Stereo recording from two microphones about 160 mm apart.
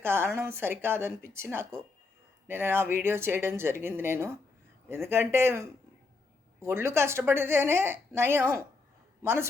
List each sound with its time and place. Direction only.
0.0 s a woman's voice: 15° right (ahead or behind)